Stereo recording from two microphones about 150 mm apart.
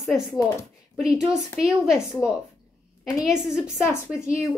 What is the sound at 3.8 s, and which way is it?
Speech, 15° left (ahead or behind).